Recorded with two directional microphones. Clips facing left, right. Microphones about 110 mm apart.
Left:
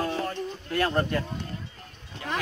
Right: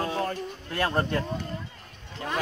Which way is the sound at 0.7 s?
30° right (ahead or behind).